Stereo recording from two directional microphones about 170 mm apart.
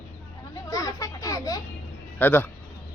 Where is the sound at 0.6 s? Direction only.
20° left (ahead or behind).